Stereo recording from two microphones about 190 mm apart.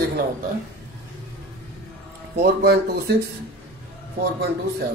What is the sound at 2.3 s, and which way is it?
Speech, 55° right (ahead or behind).